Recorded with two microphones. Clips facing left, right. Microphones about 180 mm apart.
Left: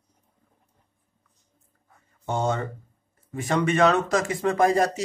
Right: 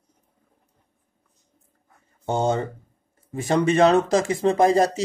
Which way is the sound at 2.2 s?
30° right (ahead or behind).